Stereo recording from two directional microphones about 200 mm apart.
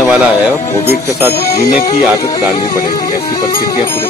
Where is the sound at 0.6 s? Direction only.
10° left (ahead or behind).